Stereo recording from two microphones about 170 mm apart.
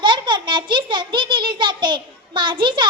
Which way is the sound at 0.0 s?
30° right (ahead or behind).